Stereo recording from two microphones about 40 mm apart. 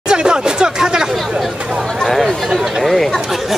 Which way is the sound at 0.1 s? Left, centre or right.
Right.